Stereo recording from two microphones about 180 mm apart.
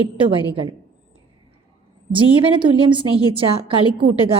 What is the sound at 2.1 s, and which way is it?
A woman's voice, 30° right (ahead or behind).